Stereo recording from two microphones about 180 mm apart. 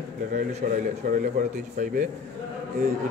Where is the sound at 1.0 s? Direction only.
45° right (ahead or behind).